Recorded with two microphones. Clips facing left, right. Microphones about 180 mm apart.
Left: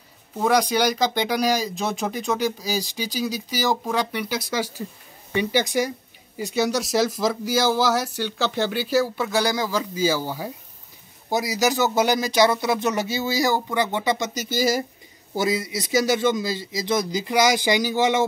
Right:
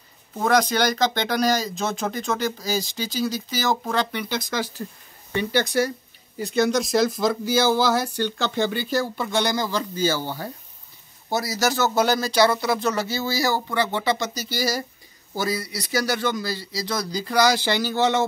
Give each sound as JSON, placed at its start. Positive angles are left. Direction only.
{"t": 0.4, "sound": "a man's voice", "side_deg": 10}